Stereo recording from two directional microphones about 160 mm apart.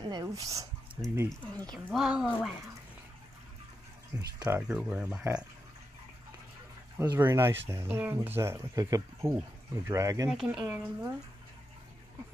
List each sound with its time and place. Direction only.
0.1 s speech: 20° right (ahead or behind)
1.3 s speech: 5° left (ahead or behind)
4.4 s speech: 15° right (ahead or behind)
7.0 s speech: 15° right (ahead or behind)
10.3 s speech: 5° right (ahead or behind)